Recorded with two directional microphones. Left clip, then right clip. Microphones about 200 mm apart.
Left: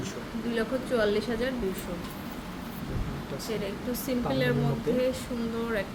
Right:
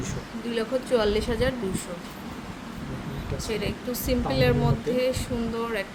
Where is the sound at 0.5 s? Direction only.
20° right (ahead or behind).